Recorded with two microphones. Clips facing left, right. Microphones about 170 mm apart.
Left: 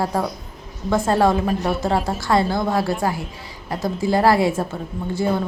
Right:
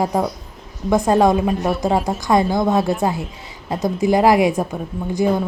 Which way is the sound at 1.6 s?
Centre (ahead or behind).